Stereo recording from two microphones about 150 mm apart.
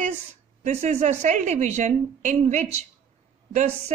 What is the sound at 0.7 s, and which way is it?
A woman's voice, 50° right (ahead or behind).